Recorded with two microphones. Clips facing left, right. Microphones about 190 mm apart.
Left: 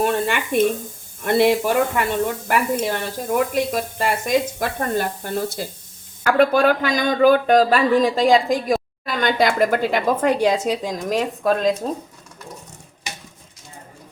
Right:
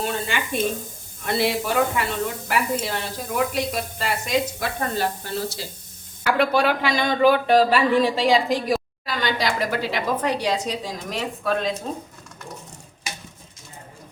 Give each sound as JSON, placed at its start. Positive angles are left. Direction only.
{"t": 0.0, "sound": "sizzle", "side_deg": 60}
{"t": 1.2, "sound": "speech", "side_deg": 55}